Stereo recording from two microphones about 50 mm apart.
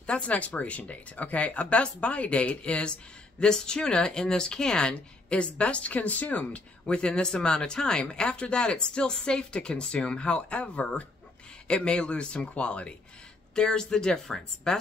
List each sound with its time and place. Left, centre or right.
0.0 s speech: left; by 14.8 s centre